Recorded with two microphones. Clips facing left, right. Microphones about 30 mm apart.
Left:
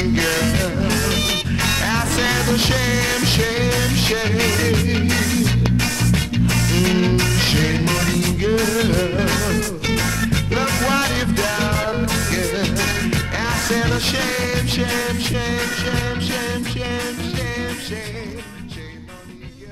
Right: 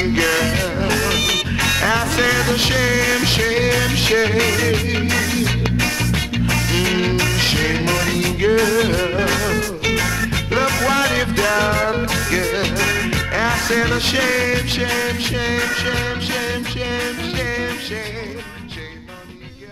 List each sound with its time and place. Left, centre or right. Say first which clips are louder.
0.1 s music: right 2 dB; centre
10.7 s music: right 1 dB; centre
11.0 s music: right 2 dB; centre